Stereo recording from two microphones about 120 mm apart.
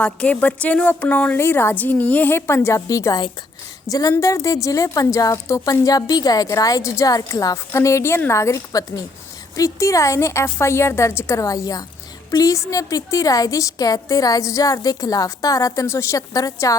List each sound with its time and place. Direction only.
0.0 s a woman's voice: 10° left (ahead or behind); by 16.7 s 30° left (ahead or behind)